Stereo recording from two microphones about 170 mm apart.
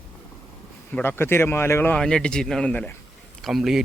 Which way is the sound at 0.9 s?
15° left (ahead or behind).